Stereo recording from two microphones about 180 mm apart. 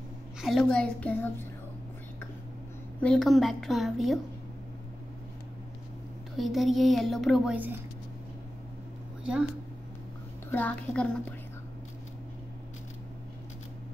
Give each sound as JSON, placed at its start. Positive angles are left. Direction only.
{"t": 0.4, "sound": "a woman's voice", "side_deg": 0}
{"t": 3.0, "sound": "a woman's voice", "side_deg": 0}
{"t": 6.3, "sound": "a woman's voice", "side_deg": 0}
{"t": 9.2, "sound": "speech", "side_deg": -5}
{"t": 10.5, "sound": "a child's voice", "side_deg": 10}